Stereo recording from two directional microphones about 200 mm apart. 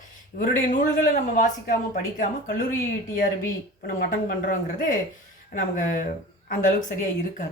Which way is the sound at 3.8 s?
50° left (ahead or behind).